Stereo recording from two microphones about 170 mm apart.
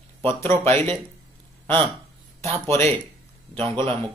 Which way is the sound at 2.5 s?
15° left (ahead or behind).